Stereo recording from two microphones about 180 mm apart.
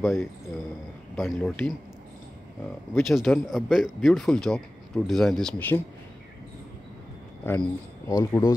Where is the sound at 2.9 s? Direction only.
Centre (ahead or behind).